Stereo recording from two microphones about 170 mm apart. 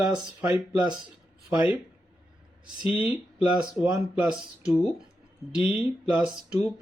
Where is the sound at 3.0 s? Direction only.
5° right (ahead or behind).